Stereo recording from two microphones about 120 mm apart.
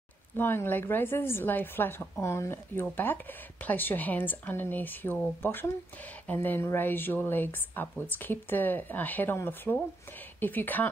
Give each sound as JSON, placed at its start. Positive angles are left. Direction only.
{"t": 0.4, "sound": "a woman's voice", "side_deg": 20}